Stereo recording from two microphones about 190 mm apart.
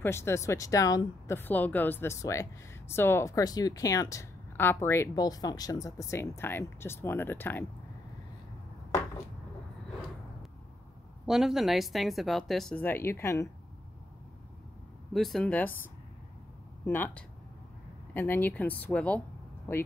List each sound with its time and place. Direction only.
0.0 s a woman's voice: 15° left (ahead or behind)
11.2 s speech: centre (ahead or behind); by 13.5 s 15° left (ahead or behind)
15.1 s speech: centre (ahead or behind)
16.8 s a woman's voice: 10° left (ahead or behind)